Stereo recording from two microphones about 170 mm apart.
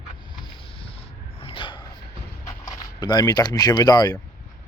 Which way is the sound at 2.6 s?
25° left (ahead or behind).